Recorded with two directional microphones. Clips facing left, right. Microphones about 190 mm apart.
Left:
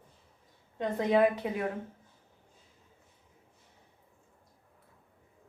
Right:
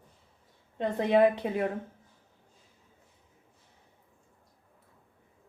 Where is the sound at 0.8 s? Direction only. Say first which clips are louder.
Right 2 dB; 30° right (ahead or behind).